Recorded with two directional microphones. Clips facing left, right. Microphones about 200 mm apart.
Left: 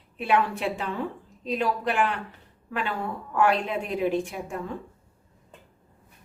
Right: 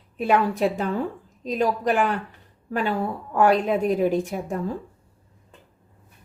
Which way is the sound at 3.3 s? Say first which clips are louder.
Right 5 dB; 40° right (ahead or behind).